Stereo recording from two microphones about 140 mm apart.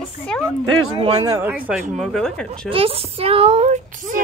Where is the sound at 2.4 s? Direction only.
40° right (ahead or behind); by 4.2 s 65° right (ahead or behind).